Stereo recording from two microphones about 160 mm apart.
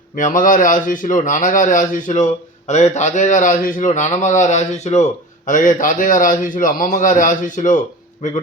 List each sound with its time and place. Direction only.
0.2 s a man's voice: 55° left (ahead or behind)